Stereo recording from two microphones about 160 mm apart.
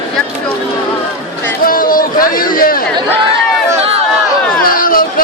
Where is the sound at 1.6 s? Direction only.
65° left (ahead or behind).